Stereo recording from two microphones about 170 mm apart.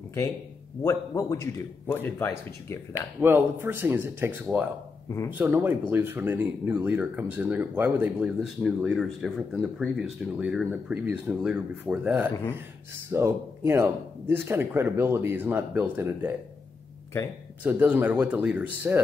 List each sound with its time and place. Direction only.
0.8 s a man's voice: 20° left (ahead or behind)
3.2 s speech: 10° right (ahead or behind)
17.6 s speech: 10° right (ahead or behind)